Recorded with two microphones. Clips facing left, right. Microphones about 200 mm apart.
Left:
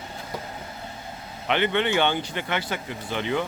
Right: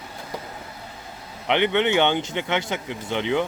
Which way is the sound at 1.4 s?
20° right (ahead or behind).